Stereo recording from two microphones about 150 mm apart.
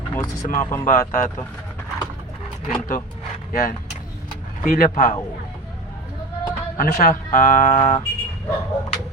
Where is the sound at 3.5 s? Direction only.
60° left (ahead or behind).